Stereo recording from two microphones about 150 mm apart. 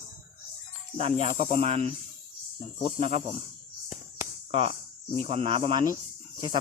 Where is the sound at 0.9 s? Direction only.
40° right (ahead or behind).